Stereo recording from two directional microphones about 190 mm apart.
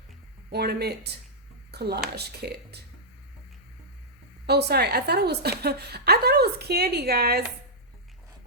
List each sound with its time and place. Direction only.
0.5 s a woman's voice: 55° right (ahead or behind)
4.4 s a woman's voice: 55° right (ahead or behind)